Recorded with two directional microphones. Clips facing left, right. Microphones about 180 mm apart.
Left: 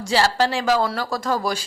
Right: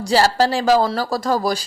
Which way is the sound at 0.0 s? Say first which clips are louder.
Right 3 dB; 40° right (ahead or behind).